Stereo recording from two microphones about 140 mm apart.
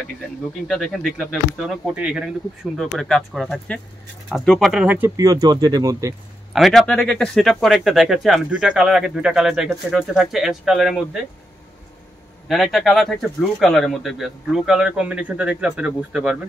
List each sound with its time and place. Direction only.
0.7 s speech: 5° left (ahead or behind)
4.8 s speech: 10° right (ahead or behind)
5.1 s speech: 25° right (ahead or behind)
6.5 s speech: centre (ahead or behind)
12.4 s speech: centre (ahead or behind)